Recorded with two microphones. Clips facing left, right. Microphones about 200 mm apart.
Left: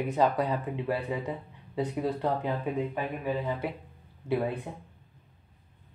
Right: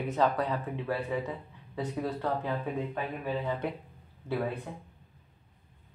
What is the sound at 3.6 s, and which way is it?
Speech, 5° left (ahead or behind).